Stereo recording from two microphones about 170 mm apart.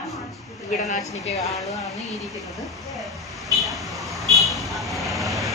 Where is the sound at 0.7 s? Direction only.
50° left (ahead or behind).